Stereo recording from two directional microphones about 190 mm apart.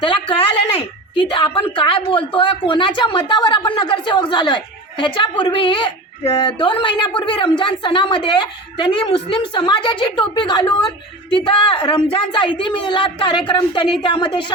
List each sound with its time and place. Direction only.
0.0 s a woman's voice: 25° left (ahead or behind)